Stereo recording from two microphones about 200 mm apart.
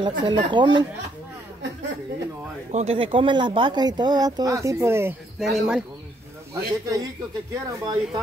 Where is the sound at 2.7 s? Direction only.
30° right (ahead or behind); by 5.5 s 10° right (ahead or behind).